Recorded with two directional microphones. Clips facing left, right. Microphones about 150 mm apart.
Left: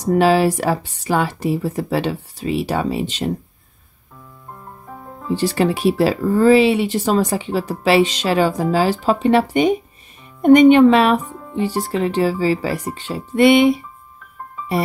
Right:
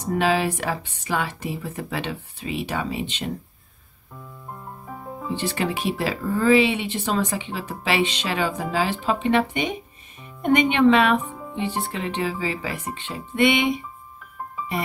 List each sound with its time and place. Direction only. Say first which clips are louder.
0.0 s speech: left 7 dB; 35° left (ahead or behind)
4.5 s music: even; 5° right (ahead or behind)
5.3 s speech: left 8 dB; 35° left (ahead or behind)
11.2 s music: left 1 dB; 5° right (ahead or behind)
11.8 s speech: left 8 dB; 40° left (ahead or behind)